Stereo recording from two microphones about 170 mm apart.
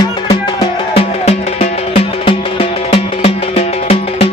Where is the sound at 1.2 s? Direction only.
35° left (ahead or behind).